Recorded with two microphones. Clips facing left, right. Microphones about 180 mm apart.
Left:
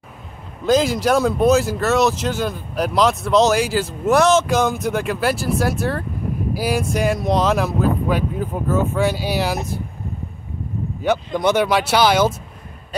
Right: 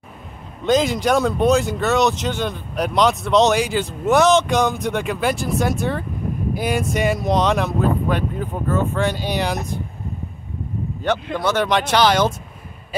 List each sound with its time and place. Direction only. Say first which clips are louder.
0.7 s speech: left 1 dB; centre (ahead or behind)
11.3 s speech: left 3 dB; 15° left (ahead or behind)